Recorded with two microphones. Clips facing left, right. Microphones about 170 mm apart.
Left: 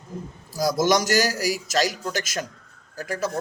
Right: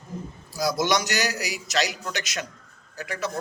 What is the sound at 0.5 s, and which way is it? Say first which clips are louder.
A man's voice: left 3 dB; 45° left (ahead or behind).